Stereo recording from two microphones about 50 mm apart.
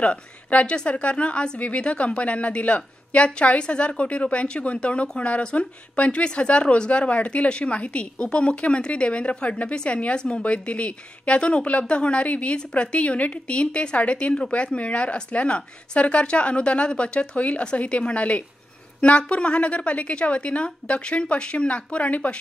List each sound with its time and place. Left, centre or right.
0.0 s a woman's voice: left